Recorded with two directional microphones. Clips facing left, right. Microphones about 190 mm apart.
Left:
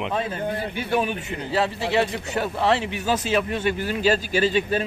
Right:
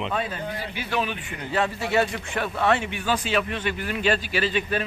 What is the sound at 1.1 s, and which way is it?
Speech, 30° left (ahead or behind).